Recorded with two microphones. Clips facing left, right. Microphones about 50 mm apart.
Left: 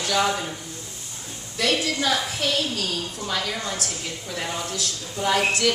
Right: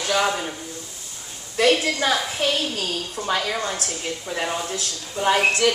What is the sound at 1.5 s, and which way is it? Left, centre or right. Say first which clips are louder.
A woman's voice: right 5 dB; right.